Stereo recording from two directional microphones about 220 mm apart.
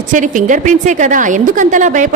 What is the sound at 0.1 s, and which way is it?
A woman's voice, 35° right (ahead or behind).